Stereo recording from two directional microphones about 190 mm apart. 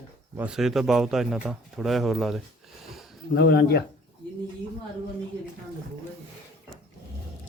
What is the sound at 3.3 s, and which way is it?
Speech, 55° left (ahead or behind).